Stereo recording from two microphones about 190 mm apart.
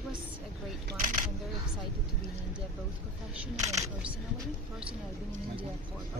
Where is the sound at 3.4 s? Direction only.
15° right (ahead or behind).